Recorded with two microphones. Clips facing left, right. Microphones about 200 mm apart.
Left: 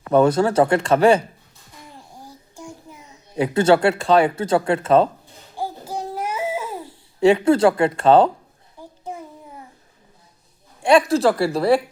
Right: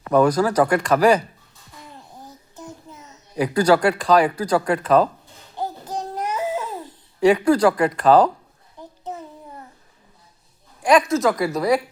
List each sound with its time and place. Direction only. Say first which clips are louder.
0.1 s speech: left 1 dB; 25° left (ahead or behind)
2.2 s child singing: left 1 dB; 10° left (ahead or behind)
3.3 s speech: left 1 dB; 25° left (ahead or behind)
5.5 s babbling: even; 10° left (ahead or behind)
7.2 s speech: left 1 dB; 25° left (ahead or behind)
8.8 s a sound: even; 10° left (ahead or behind)
10.8 s a woman's voice: left 1 dB; 30° left (ahead or behind)